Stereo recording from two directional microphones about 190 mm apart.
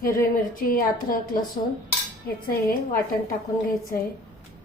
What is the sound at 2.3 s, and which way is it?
Speech, 50° left (ahead or behind).